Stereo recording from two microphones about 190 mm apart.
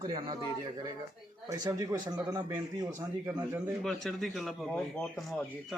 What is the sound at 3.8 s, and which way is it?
Speech, centre (ahead or behind).